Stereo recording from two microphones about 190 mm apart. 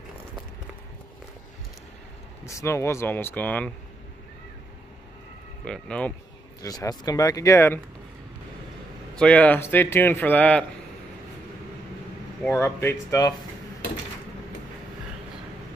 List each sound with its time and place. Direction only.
2.4 s speech: 15° left (ahead or behind)
5.7 s speech: 5° left (ahead or behind)
6.6 s speech: 20° left (ahead or behind)
9.2 s speech: 10° left (ahead or behind)
12.4 s speech: 15° left (ahead or behind)